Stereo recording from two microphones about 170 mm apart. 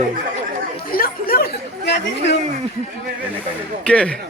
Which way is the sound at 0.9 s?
60° left (ahead or behind).